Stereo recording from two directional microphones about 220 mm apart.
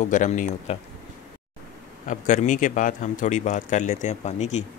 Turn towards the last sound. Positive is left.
turn(degrees=30)  # may be behind; listen again after turning